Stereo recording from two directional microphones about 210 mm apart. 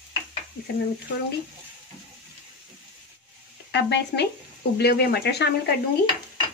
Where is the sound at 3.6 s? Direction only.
55° left (ahead or behind).